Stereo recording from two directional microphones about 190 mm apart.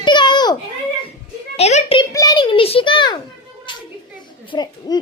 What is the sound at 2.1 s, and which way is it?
A child's voice, 20° left (ahead or behind).